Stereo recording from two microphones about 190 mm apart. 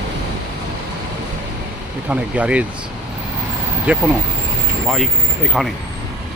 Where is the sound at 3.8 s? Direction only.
5° right (ahead or behind).